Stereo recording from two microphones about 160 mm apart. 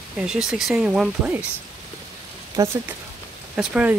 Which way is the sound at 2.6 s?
20° right (ahead or behind).